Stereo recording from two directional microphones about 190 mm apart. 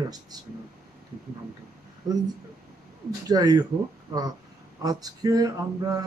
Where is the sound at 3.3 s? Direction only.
20° right (ahead or behind).